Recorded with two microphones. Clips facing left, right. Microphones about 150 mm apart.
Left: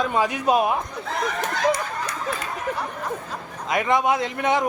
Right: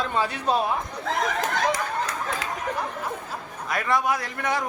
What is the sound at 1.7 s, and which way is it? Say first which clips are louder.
Chatter: right 1 dB; 90° right.